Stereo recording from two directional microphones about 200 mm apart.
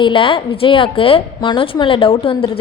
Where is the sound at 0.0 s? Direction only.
25° left (ahead or behind).